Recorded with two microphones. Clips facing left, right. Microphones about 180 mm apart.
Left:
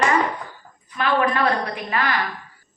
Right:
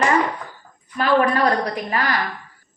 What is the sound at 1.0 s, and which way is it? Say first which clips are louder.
Speech: right 3 dB; 40° right (ahead or behind).